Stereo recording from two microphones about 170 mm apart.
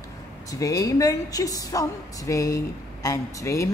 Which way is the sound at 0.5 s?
20° left (ahead or behind).